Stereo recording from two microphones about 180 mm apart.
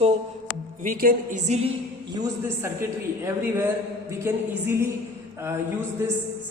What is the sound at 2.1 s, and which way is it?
Speech, 20° right (ahead or behind).